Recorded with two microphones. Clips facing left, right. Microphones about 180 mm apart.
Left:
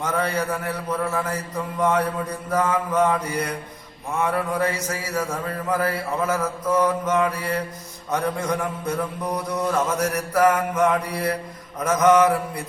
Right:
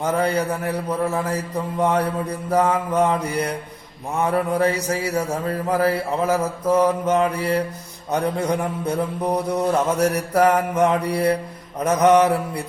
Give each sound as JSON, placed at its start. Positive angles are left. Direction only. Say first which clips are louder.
{"t": 0.0, "sound": "mantra", "louder": "right 4 dB", "side_deg": -35}